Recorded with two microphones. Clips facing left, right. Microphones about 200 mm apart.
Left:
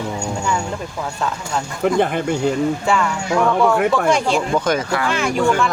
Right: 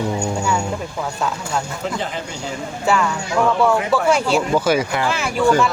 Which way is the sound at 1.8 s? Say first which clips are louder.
Left 8 dB; 55° left (ahead or behind).